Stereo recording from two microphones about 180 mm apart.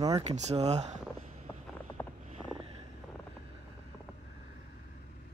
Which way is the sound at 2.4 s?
5° right (ahead or behind).